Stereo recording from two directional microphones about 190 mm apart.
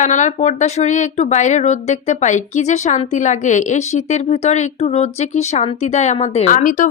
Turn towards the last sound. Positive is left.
turn(degrees=45)  # may be behind; listen again after turning